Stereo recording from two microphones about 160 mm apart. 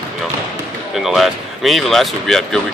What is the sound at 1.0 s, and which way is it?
Speech, centre (ahead or behind).